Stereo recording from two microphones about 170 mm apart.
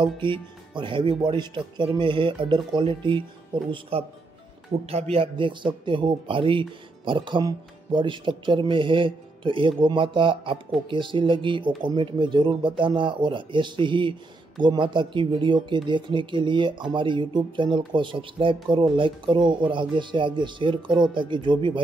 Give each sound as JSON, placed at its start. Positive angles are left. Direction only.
{"t": 0.2, "sound": "speech", "side_deg": -30}
{"t": 5.1, "sound": "speech", "side_deg": -30}